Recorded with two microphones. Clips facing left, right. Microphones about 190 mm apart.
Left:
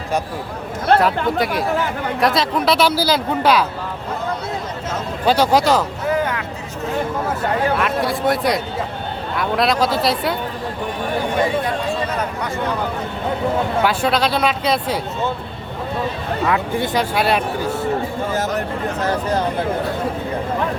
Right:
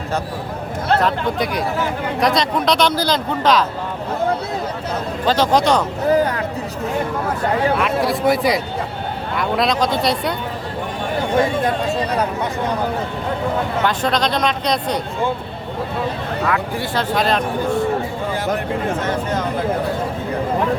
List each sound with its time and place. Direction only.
1.0 s a man's voice: centre (ahead or behind)
5.2 s speech: 10° left (ahead or behind)
6.1 s a sound: 35° right (ahead or behind)
7.8 s a man's voice: centre (ahead or behind)
13.8 s a man's voice: 5° left (ahead or behind)
16.5 s speech: 20° left (ahead or behind)
19.0 s speech: 35° left (ahead or behind)